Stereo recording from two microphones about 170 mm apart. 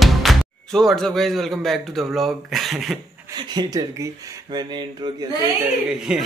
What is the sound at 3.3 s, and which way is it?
Speech, 25° right (ahead or behind).